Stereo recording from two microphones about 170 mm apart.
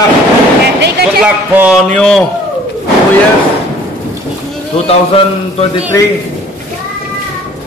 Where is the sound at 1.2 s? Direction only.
5° right (ahead or behind).